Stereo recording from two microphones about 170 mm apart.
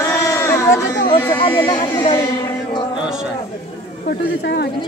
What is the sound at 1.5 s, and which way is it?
Speech, 25° left (ahead or behind).